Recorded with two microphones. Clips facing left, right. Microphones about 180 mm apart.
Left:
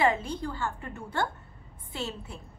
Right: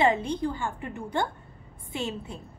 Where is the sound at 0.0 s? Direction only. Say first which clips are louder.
Right 3 dB; 20° right (ahead or behind).